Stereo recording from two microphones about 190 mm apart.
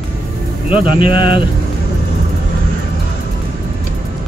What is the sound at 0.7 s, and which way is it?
Speech, 25° left (ahead or behind).